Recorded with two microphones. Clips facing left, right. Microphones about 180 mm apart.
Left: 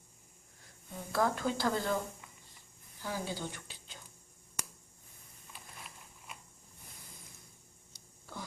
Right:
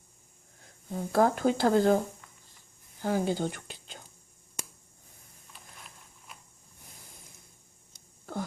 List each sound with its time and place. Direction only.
0.9 s speech: 45° right (ahead or behind)
3.0 s speech: 55° right (ahead or behind)
7.9 s a sound: 55° right (ahead or behind)